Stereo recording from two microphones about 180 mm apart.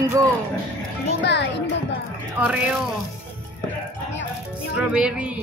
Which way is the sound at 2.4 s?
5° right (ahead or behind).